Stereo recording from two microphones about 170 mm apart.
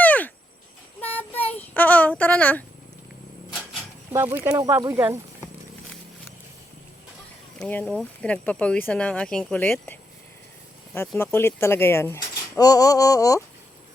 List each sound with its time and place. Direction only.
0.0 s a sound: 10° left (ahead or behind)
1.0 s child singing: 10° left (ahead or behind)
1.5 s speech: 10° left (ahead or behind)
3.5 s a sound: centre (ahead or behind)
4.1 s speech: 15° right (ahead or behind)
7.6 s speech: 5° left (ahead or behind)
11.2 s speech: 15° left (ahead or behind)